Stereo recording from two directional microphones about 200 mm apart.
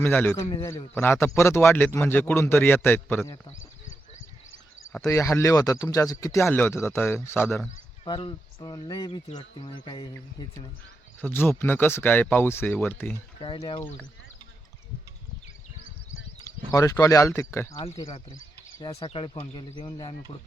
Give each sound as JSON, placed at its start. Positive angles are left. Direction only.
{"t": 0.0, "sound": "speech", "side_deg": 10}
{"t": 4.9, "sound": "speech", "side_deg": 15}
{"t": 8.0, "sound": "speech", "side_deg": 25}
{"t": 11.2, "sound": "speech", "side_deg": 10}
{"t": 13.4, "sound": "speech", "side_deg": 25}
{"t": 16.7, "sound": "speech", "side_deg": 15}
{"t": 18.9, "sound": "speech", "side_deg": 30}